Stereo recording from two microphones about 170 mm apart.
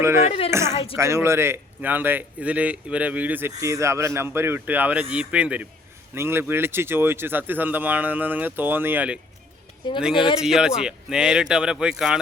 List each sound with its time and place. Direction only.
0.0 s a man's voice: 15° right (ahead or behind)
0.3 s speech: 35° left (ahead or behind)
0.5 s a man's voice: 15° right (ahead or behind)
9.8 s speech: 30° left (ahead or behind)
10.4 s speech: 5° right (ahead or behind)